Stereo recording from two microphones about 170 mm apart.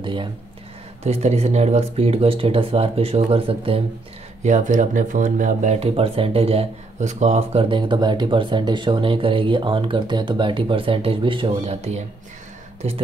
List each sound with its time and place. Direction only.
0.0 s speech: 30° right (ahead or behind)
4.4 s speech: 45° right (ahead or behind)